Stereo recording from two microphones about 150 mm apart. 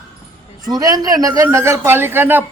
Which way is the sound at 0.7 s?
25° right (ahead or behind).